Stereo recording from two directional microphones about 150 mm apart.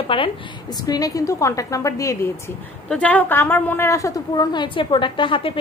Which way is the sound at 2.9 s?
10° left (ahead or behind).